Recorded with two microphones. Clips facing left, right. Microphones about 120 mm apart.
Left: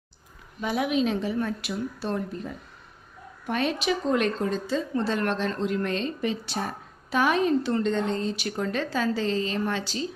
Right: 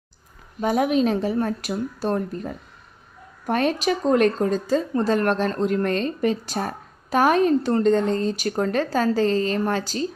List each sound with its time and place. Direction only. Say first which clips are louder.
0.6 s speech: right 5 dB; 45° right (ahead or behind)